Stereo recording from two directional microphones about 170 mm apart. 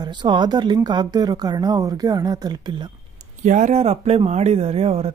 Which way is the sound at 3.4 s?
45° right (ahead or behind).